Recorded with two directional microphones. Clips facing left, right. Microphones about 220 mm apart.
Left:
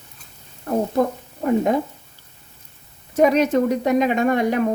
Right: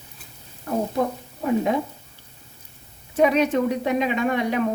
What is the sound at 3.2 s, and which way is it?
A woman's voice, 45° left (ahead or behind).